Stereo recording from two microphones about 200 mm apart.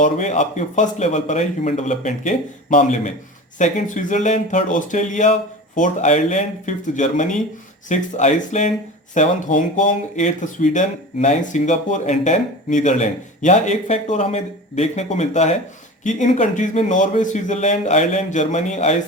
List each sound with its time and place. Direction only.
0.0 s speech: 35° left (ahead or behind)